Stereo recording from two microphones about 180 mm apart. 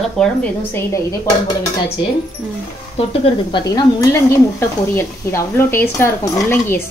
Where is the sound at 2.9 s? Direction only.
30° left (ahead or behind); by 6.8 s 15° left (ahead or behind).